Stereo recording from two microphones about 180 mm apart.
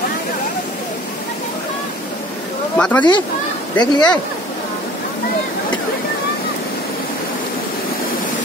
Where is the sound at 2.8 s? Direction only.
10° left (ahead or behind).